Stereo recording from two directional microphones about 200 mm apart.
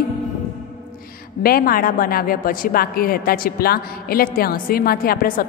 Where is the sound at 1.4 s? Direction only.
45° left (ahead or behind).